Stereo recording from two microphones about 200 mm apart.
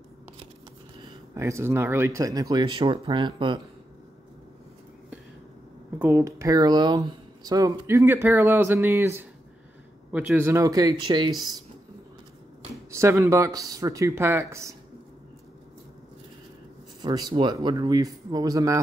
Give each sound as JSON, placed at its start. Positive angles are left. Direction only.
{"t": 1.3, "sound": "speech", "side_deg": -15}
{"t": 5.9, "sound": "speech", "side_deg": -15}
{"t": 12.9, "sound": "speech", "side_deg": -15}
{"t": 17.0, "sound": "speech", "side_deg": -20}